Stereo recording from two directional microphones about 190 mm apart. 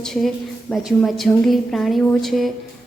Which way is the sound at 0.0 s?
Centre (ahead or behind).